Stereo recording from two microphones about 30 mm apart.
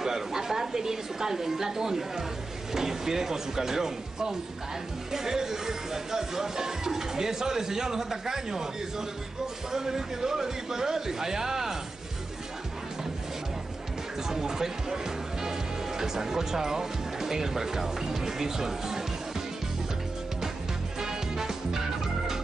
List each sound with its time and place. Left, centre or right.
0.0 s speech: centre
9.7 s speech: centre
14.3 s speech: centre
21.0 s music: centre